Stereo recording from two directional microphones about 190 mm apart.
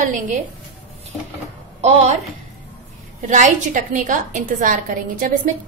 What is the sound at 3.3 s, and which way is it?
A woman's voice, 40° right (ahead or behind).